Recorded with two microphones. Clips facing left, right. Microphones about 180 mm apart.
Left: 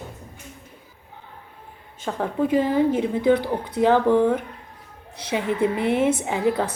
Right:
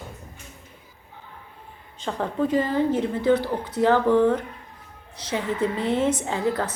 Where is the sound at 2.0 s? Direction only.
10° left (ahead or behind).